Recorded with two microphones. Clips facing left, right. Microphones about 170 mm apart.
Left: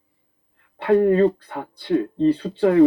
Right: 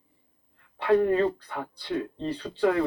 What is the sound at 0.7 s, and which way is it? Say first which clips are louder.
Speech: left 6 dB; 55° left (ahead or behind).